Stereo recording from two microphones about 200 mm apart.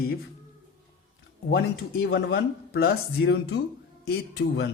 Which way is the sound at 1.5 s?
55° left (ahead or behind).